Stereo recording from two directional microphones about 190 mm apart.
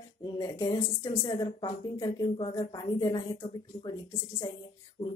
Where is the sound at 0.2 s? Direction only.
20° left (ahead or behind).